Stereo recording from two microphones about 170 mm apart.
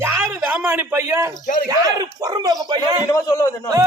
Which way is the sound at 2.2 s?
25° right (ahead or behind).